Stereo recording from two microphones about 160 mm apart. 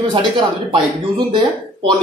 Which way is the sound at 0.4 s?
30° right (ahead or behind).